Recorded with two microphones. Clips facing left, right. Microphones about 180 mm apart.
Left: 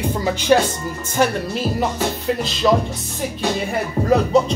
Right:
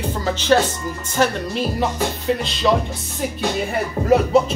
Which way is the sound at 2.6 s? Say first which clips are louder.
Left 2 dB; centre (ahead or behind).